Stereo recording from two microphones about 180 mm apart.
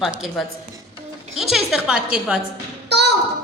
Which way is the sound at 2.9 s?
70° right (ahead or behind).